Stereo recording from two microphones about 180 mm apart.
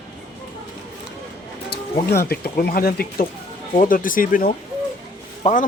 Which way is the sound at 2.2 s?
60° left (ahead or behind).